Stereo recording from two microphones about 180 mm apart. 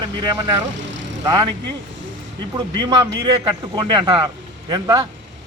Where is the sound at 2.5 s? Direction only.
25° right (ahead or behind).